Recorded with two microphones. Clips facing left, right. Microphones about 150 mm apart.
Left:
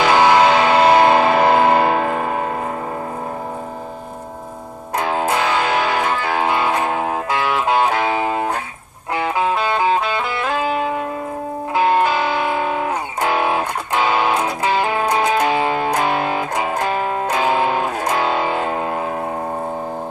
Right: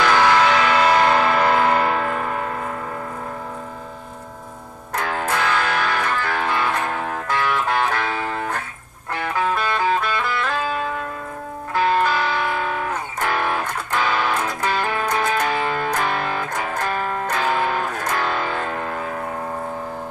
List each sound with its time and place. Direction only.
0.0 s vehicle: 15° left (ahead or behind)
0.5 s vehicle: 25° left (ahead or behind)
4.9 s music: 15° left (ahead or behind)